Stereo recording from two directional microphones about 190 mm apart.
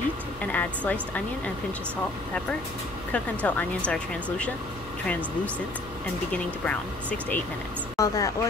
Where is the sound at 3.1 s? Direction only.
5° left (ahead or behind).